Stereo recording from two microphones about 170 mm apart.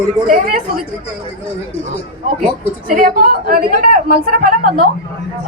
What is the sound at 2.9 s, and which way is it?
A woman's voice, 55° right (ahead or behind).